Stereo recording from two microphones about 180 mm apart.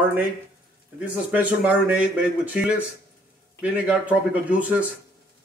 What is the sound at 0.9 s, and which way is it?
A man's voice, 10° right (ahead or behind).